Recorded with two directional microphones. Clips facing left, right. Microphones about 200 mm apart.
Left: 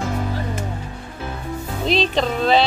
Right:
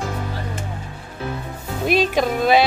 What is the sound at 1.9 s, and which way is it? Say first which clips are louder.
Speech: right 1 dB; 10° right (ahead or behind).